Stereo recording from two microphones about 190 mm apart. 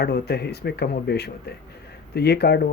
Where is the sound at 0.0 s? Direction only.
60° left (ahead or behind).